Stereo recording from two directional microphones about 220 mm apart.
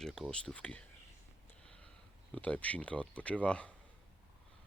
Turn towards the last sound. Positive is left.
turn(degrees=5)  # may be behind; listen again after turning